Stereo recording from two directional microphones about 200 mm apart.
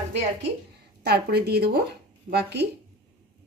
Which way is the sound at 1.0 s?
55° right (ahead or behind).